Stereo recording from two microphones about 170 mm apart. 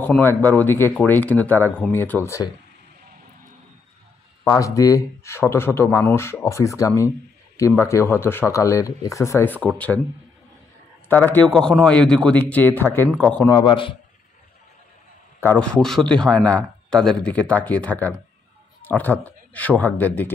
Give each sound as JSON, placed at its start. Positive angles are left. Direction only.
{"t": 0.0, "sound": "a man's voice", "side_deg": 10}
{"t": 4.5, "sound": "a man's voice", "side_deg": 20}
{"t": 11.1, "sound": "a man's voice", "side_deg": 10}
{"t": 13.5, "sound": "a man's voice", "side_deg": 25}
{"t": 15.4, "sound": "a man's voice", "side_deg": 5}